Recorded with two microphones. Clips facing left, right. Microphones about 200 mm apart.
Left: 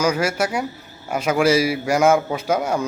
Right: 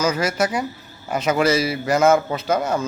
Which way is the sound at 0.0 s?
10° left (ahead or behind).